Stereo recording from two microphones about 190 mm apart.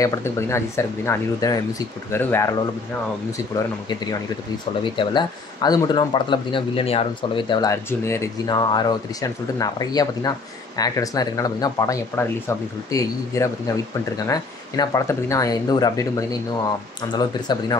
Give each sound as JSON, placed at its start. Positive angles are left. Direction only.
{"t": 0.0, "sound": "speech", "side_deg": 15}